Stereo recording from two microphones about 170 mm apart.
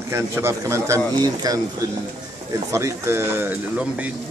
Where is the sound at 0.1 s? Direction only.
15° right (ahead or behind).